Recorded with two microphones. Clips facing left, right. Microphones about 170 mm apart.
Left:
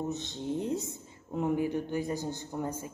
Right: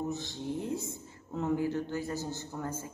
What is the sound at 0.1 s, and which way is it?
A woman's voice, 20° left (ahead or behind).